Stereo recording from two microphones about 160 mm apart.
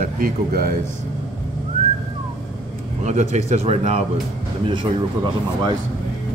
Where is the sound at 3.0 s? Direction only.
45° right (ahead or behind).